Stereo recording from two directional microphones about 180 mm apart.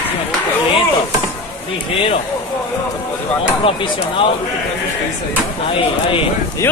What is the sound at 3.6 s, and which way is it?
Speech, 30° left (ahead or behind).